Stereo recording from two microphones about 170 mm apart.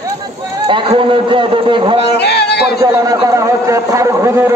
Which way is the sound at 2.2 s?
75° left (ahead or behind).